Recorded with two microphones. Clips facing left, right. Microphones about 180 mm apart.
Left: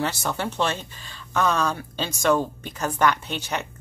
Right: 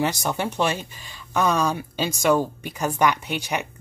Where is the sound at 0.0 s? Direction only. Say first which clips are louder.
Right 2 dB; 15° right (ahead or behind).